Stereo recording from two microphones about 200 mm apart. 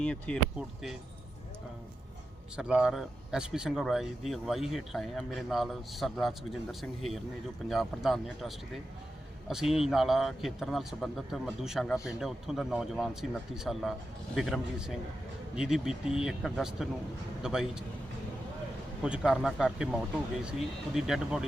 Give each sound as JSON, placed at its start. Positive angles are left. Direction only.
{"t": 0.0, "sound": "speech", "side_deg": 5}
{"t": 2.6, "sound": "speech", "side_deg": -5}
{"t": 19.0, "sound": "speech", "side_deg": -5}